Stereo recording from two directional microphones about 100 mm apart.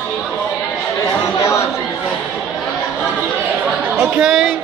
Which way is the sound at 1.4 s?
30° left (ahead or behind).